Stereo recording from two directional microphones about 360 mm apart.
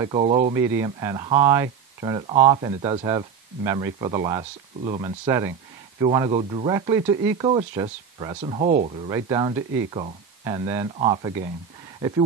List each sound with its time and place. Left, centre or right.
0.0 s speech: centre